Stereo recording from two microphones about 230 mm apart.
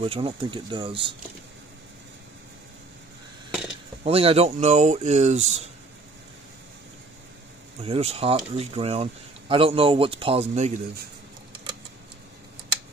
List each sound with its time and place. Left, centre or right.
0.0 s speech: right
4.0 s speech: right
7.8 s speech: right